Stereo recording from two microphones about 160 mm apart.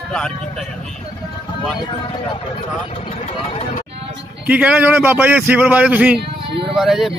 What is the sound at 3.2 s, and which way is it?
Speech, 35° left (ahead or behind).